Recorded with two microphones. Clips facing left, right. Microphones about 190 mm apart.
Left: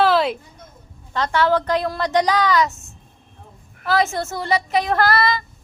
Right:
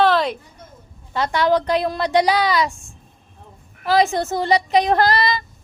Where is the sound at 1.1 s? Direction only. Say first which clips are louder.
Right 1 dB; 10° right (ahead or behind).